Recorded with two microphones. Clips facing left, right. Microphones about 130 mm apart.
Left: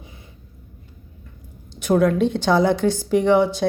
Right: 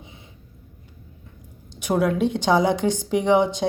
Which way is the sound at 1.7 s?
10° right (ahead or behind).